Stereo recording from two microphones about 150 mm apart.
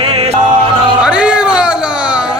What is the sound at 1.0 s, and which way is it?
Music, 5° right (ahead or behind).